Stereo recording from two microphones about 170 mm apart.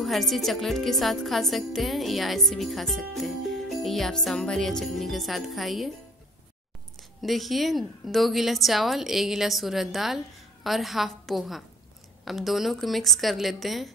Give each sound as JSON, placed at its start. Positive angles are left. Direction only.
{"t": 0.0, "sound": "a woman's voice", "side_deg": 0}
{"t": 7.2, "sound": "a woman's voice", "side_deg": 0}